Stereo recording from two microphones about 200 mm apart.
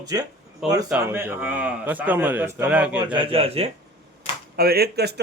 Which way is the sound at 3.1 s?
25° right (ahead or behind).